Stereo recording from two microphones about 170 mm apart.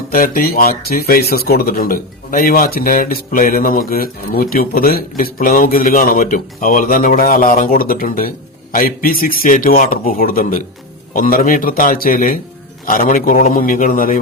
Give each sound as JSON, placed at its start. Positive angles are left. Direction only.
{"t": 0.1, "sound": "a man's voice", "side_deg": 55}